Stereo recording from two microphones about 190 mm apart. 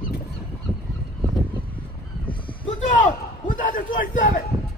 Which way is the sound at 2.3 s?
25° left (ahead or behind).